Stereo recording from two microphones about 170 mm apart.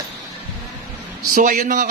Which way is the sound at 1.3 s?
50° right (ahead or behind).